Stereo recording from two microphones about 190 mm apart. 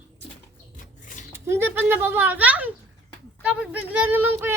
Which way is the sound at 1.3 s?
10° right (ahead or behind).